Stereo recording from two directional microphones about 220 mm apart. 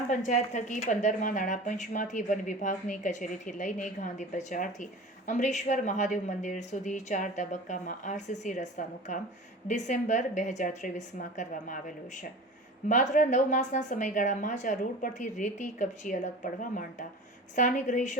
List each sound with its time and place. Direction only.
0.3 s speech: 35° left (ahead or behind)